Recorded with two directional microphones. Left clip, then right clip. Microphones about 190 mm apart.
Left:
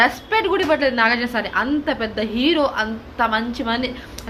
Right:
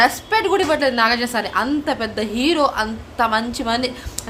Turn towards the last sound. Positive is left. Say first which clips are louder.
# right 2 dB
turn(degrees=-20)  # may be behind; listen again after turning